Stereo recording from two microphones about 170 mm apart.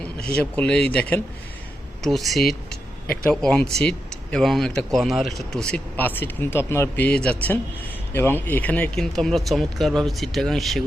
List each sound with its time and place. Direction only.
0.3 s speech: 5° left (ahead or behind)